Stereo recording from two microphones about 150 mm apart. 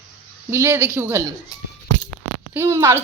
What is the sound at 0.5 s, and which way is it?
Speech, 20° right (ahead or behind).